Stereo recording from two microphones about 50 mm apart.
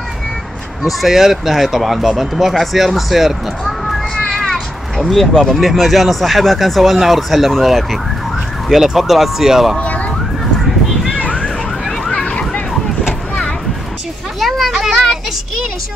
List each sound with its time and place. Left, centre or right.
0.8 s speech: centre
3.8 s cat: centre
5.3 s speech: centre
9.8 s a sound: left
11.3 s emergency vehicle: centre
12.1 s vehicle: left
14.7 s a sound: centre